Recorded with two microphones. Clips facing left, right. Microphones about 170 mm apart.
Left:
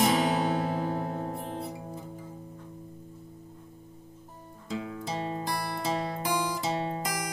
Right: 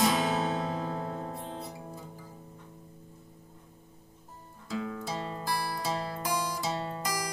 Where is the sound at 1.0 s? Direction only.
25° left (ahead or behind).